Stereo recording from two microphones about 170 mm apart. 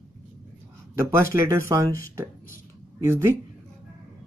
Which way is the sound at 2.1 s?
15° right (ahead or behind).